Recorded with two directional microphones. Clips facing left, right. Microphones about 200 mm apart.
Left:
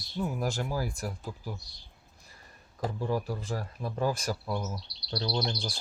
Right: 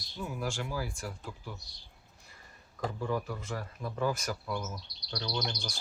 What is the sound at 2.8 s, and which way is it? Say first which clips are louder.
Speech: left 2 dB; 35° left (ahead or behind).